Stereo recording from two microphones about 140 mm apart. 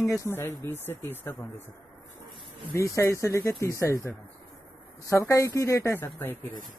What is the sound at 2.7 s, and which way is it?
Speech, 20° left (ahead or behind).